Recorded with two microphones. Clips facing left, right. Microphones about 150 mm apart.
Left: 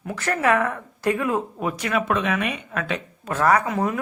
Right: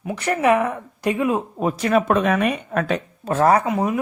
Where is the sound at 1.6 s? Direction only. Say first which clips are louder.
Right 5 dB; 35° right (ahead or behind).